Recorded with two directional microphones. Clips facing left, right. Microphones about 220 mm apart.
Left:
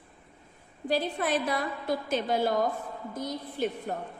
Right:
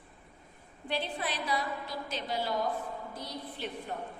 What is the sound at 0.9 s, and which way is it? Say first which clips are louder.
A woman's voice: left 7 dB; 45° left (ahead or behind).